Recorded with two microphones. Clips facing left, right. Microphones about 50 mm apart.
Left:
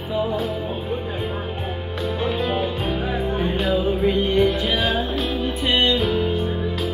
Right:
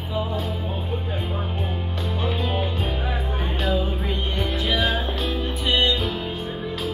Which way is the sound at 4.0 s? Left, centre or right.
Left.